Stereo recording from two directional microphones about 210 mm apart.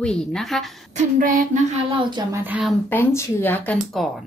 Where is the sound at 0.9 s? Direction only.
35° right (ahead or behind).